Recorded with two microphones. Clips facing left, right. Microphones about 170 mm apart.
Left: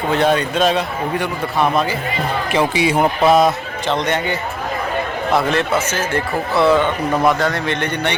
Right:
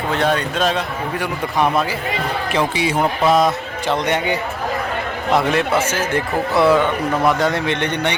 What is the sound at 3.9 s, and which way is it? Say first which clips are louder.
Speech: even; 10° right (ahead or behind).